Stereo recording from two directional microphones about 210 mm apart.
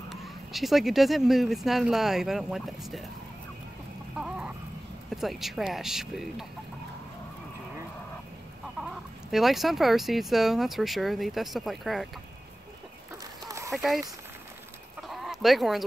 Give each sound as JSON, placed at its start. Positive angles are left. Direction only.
{"t": 0.1, "sound": "speech", "side_deg": 0}
{"t": 4.2, "sound": "a sound", "side_deg": -5}
{"t": 5.1, "sound": "speech", "side_deg": 0}
{"t": 8.8, "sound": "speech", "side_deg": 0}
{"t": 13.5, "sound": "a sound", "side_deg": -15}
{"t": 15.0, "sound": "chicken", "side_deg": 0}